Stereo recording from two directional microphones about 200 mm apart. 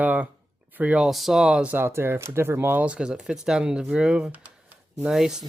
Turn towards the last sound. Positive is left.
turn(degrees=0)  # may be behind; listen again after turning